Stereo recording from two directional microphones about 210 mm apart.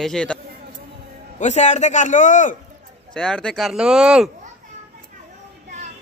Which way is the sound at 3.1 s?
5° left (ahead or behind).